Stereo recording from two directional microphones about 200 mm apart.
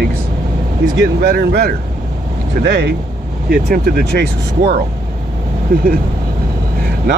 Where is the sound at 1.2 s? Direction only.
55° right (ahead or behind).